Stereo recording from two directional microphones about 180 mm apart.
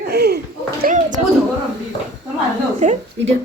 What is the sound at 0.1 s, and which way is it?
Children playing, 65° right (ahead or behind).